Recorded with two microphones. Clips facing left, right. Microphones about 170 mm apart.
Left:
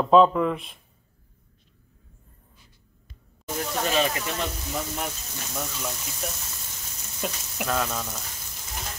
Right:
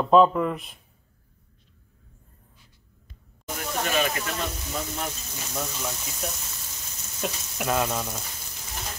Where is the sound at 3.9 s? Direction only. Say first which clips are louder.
Left 1 dB; 25° left (ahead or behind).